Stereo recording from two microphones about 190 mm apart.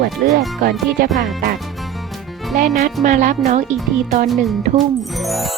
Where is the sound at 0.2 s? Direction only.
50° right (ahead or behind).